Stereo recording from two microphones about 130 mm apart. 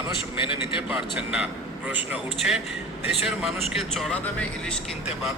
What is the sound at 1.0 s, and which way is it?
Speech, 10° right (ahead or behind).